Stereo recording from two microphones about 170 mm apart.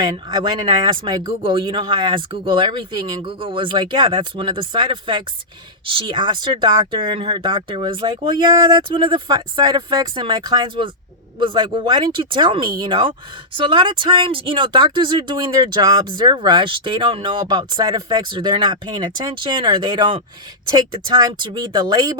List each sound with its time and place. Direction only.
0.0 s speech: 25° right (ahead or behind)